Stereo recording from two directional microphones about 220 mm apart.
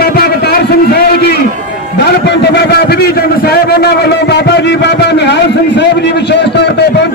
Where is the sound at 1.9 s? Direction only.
50° left (ahead or behind).